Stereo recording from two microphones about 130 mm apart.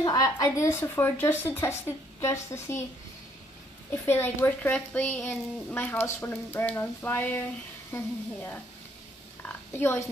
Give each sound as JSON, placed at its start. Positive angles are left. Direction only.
{"t": 0.0, "sound": "speech", "side_deg": 25}
{"t": 3.9, "sound": "a woman's voice", "side_deg": 15}
{"t": 9.4, "sound": "oink", "side_deg": 15}